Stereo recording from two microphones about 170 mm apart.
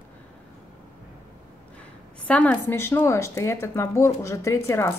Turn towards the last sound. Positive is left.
turn(degrees=15)  # may be behind; listen again after turning